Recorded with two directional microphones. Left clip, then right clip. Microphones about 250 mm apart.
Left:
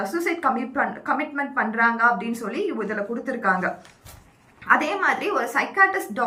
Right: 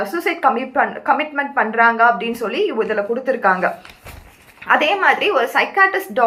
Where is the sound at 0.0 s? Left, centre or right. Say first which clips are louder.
Right 6 dB; centre.